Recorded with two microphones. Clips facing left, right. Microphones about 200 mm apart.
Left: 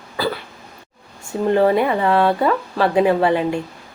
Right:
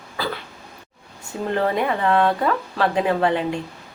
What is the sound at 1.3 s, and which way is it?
Speech, 50° left (ahead or behind).